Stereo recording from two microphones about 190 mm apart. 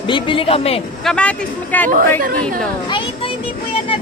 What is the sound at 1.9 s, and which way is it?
Speech, 45° right (ahead or behind).